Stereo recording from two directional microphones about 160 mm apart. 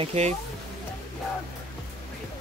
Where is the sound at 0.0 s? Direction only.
45° right (ahead or behind).